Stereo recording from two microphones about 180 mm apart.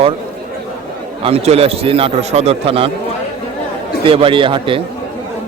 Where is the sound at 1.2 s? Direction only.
35° right (ahead or behind).